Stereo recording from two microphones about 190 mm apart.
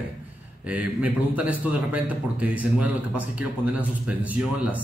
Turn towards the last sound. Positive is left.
turn(degrees=-5)  # may be behind; listen again after turning